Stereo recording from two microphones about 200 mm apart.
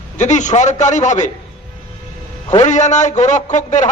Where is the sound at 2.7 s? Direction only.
35° left (ahead or behind).